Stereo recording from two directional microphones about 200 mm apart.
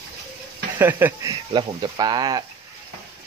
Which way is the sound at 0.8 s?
10° right (ahead or behind).